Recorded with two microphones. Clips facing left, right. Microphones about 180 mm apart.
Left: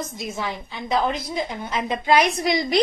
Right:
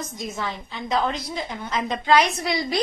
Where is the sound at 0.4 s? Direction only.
15° left (ahead or behind).